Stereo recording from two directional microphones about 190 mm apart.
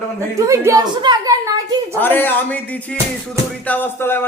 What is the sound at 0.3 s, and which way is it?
Speech, 15° right (ahead or behind).